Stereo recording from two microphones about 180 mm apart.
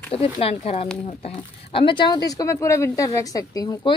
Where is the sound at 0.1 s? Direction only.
30° left (ahead or behind).